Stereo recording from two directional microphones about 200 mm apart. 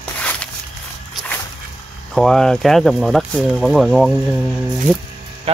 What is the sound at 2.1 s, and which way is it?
Speech, centre (ahead or behind).